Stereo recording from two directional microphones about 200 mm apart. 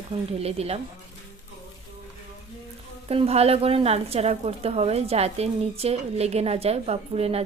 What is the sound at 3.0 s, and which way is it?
A woman's voice, 30° right (ahead or behind).